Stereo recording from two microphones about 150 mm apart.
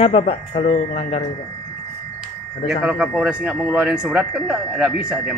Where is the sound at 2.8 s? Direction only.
5° right (ahead or behind).